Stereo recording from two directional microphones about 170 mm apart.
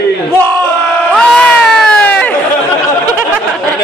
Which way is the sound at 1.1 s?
5° left (ahead or behind).